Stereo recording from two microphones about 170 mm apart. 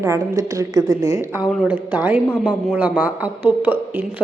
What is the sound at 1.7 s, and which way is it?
Speech, 10° right (ahead or behind).